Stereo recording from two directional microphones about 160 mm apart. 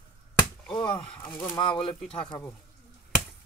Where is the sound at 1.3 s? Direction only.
25° left (ahead or behind).